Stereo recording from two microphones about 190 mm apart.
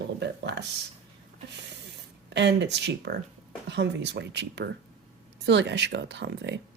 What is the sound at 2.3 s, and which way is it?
Speech, 65° right (ahead or behind).